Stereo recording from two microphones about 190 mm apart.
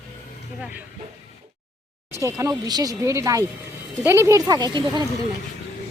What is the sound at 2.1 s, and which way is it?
Speech, 15° right (ahead or behind).